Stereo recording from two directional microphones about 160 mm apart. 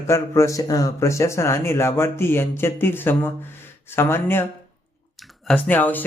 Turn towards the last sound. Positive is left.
turn(degrees=10)  # may be behind; listen again after turning